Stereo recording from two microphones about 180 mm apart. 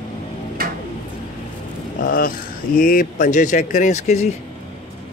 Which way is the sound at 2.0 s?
50° left (ahead or behind).